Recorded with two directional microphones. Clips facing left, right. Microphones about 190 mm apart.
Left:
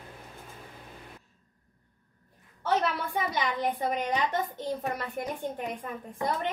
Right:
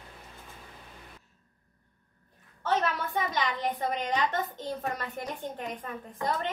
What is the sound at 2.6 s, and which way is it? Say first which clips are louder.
A woman's voice: left 1 dB; 10° left (ahead or behind).